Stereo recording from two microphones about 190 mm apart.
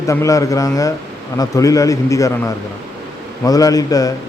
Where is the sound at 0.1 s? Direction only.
15° left (ahead or behind).